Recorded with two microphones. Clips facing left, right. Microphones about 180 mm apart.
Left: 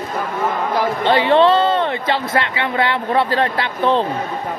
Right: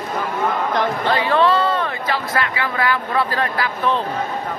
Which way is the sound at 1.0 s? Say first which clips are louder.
Left 5 dB; 25° left (ahead or behind).